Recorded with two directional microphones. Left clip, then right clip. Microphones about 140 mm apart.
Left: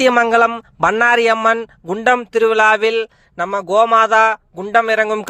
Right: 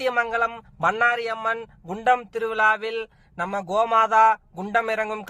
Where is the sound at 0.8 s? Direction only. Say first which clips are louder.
Left 8 dB; 55° left (ahead or behind).